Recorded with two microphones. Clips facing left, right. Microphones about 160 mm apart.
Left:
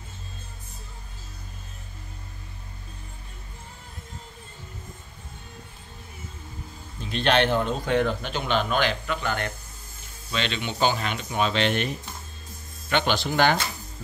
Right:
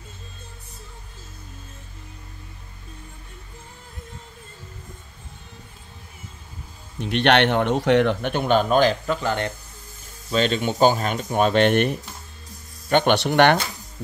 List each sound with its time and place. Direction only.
7.0 s a man's voice: 70° right (ahead or behind); by 9.5 s 30° right (ahead or behind)
10.3 s a man's voice: 40° right (ahead or behind); by 13.6 s 65° right (ahead or behind)